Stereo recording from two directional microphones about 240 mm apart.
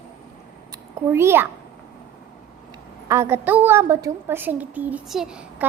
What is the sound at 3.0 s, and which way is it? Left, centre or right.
A woman's voice, centre.